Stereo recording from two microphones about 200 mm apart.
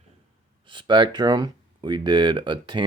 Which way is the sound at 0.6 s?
25° right (ahead or behind).